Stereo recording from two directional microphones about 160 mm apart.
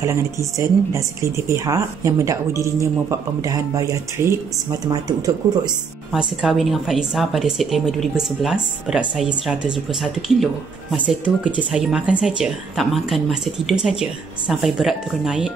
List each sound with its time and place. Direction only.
0.0 s speech: 20° right (ahead or behind)
6.1 s a woman's voice: centre (ahead or behind)